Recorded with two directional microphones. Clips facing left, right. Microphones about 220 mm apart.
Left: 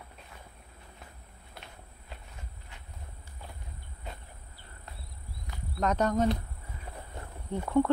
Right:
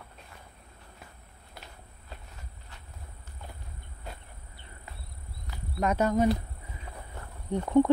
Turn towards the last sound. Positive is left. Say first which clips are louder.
# right 4 dB
turn(degrees=-15)  # may be behind; listen again after turning